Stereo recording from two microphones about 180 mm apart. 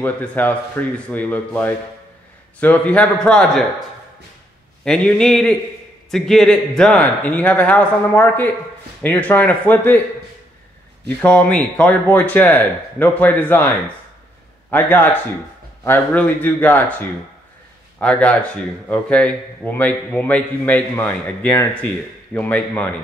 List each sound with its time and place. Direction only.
0.0 s a man's voice: 10° left (ahead or behind)
4.8 s a man's voice: 5° left (ahead or behind)
11.1 s speech: 5° left (ahead or behind)
14.7 s speech: 10° left (ahead or behind)
17.9 s speech: 5° left (ahead or behind)